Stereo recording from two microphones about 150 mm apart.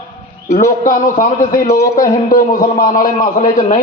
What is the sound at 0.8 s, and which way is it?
A man's voice, 65° left (ahead or behind).